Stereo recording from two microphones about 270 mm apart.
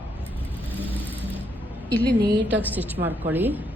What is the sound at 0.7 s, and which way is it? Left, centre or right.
Vehicle, centre.